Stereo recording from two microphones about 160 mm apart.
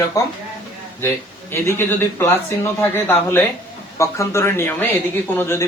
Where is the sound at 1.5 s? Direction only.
15° left (ahead or behind).